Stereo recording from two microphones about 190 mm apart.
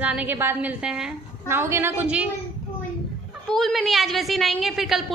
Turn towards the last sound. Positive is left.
turn(degrees=0)  # may be behind; listen again after turning